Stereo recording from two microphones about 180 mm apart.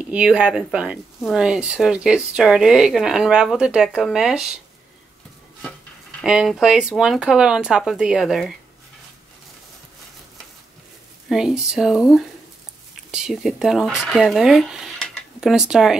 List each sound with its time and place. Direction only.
0.1 s speech: 5° right (ahead or behind)
6.2 s speech: centre (ahead or behind)
11.2 s speech: 5° right (ahead or behind)